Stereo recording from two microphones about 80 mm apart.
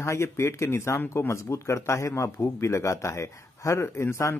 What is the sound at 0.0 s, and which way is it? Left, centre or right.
Speech, left.